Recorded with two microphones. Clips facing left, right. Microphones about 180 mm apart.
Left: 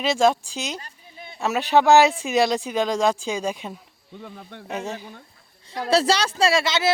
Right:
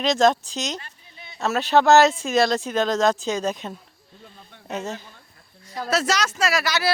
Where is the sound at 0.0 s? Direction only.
10° left (ahead or behind).